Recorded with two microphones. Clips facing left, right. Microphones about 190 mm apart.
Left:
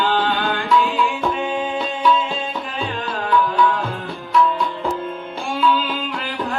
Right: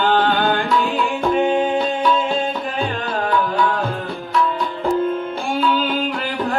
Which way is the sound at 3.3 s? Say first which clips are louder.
Left 2 dB; 45° right (ahead or behind).